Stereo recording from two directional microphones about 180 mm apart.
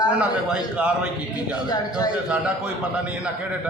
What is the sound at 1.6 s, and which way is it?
Speech, 20° left (ahead or behind).